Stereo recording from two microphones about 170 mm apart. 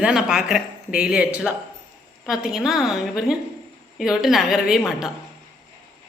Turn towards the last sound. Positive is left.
turn(degrees=0)  # may be behind; listen again after turning